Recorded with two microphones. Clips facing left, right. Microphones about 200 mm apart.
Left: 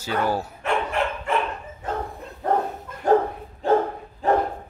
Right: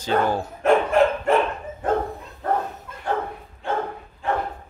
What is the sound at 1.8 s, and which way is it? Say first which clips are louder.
Dog: right 7 dB; 55° right (ahead or behind).